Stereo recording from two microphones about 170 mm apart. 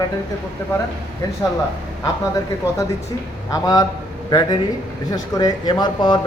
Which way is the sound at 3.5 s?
20° left (ahead or behind).